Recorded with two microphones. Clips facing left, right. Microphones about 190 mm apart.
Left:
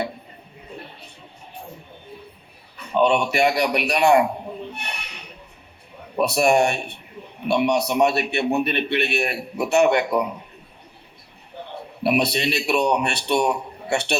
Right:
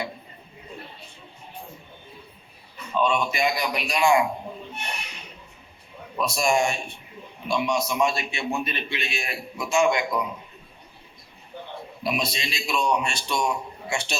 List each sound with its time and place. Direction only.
2.9 s speech: 70° left (ahead or behind)
6.1 s a man's voice: 65° left (ahead or behind)
12.0 s a man's voice: 65° left (ahead or behind)